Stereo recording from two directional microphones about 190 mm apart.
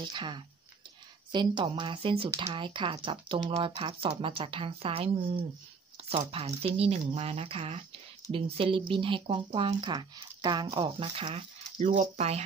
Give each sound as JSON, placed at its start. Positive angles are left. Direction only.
{"t": 0.0, "sound": "speech", "side_deg": -25}